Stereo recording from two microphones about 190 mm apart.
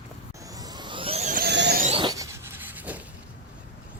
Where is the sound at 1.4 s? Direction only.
60° right (ahead or behind).